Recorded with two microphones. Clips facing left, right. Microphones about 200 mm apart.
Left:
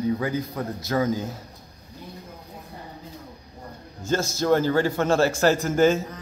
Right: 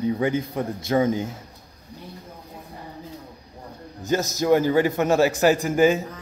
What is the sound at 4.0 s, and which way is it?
A man's voice, 15° right (ahead or behind).